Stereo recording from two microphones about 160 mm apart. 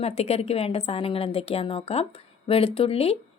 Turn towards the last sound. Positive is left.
turn(degrees=40)  # may be behind; listen again after turning